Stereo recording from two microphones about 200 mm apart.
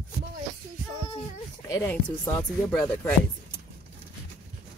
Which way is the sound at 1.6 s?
15° left (ahead or behind).